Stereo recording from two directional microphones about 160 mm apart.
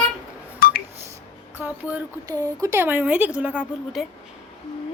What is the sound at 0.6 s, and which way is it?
Telephone dialing, 65° left (ahead or behind).